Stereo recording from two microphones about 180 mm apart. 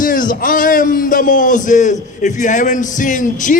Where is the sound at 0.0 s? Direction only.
50° left (ahead or behind).